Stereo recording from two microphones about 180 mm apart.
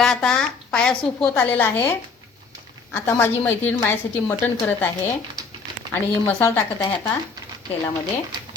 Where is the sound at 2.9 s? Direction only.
10° left (ahead or behind).